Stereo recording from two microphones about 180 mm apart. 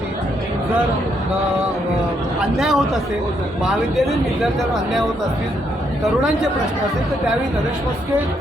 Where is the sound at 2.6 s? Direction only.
5° right (ahead or behind).